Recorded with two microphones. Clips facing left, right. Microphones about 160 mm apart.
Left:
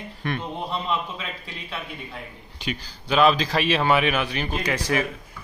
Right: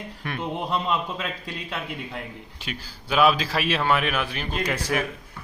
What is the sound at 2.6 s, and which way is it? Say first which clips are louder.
A man's voice: left 6 dB; 5° right (ahead or behind).